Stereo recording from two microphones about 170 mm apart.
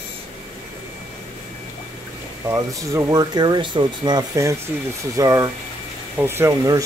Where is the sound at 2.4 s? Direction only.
20° right (ahead or behind).